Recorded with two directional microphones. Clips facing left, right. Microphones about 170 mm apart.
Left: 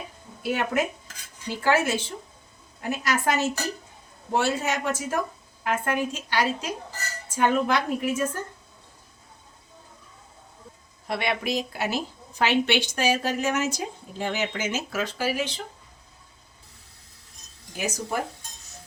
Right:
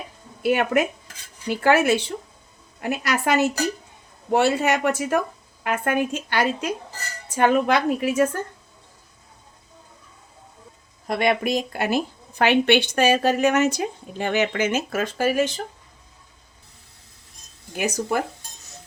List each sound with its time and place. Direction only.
0.4 s a woman's voice: 65° right (ahead or behind)
7.3 s a woman's voice: 70° right (ahead or behind)
11.0 s a woman's voice: 45° right (ahead or behind)
17.7 s a woman's voice: 65° right (ahead or behind)